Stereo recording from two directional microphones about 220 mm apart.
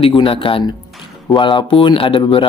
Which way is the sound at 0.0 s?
25° left (ahead or behind).